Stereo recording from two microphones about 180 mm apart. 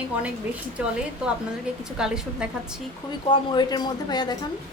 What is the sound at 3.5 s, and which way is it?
Speech, 25° left (ahead or behind).